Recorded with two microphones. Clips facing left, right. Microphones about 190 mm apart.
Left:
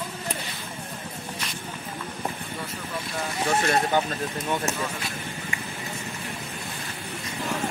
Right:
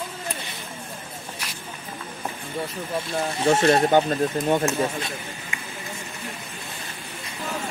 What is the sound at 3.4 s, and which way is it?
Speech, 30° right (ahead or behind).